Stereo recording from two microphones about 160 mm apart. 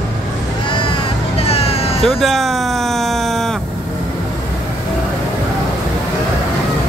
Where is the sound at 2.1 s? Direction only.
Centre (ahead or behind).